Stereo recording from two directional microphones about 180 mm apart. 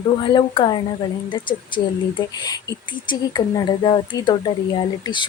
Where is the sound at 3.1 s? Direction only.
25° left (ahead or behind).